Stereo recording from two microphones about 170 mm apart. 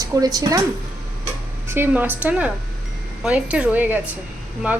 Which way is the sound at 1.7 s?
10° right (ahead or behind).